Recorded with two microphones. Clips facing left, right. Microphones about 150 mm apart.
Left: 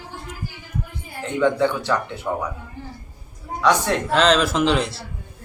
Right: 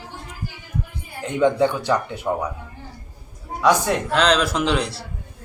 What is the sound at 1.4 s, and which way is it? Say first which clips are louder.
Speech: right 1 dB; 15° right (ahead or behind).